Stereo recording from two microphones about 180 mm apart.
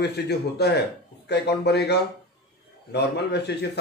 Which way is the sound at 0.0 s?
65° left (ahead or behind).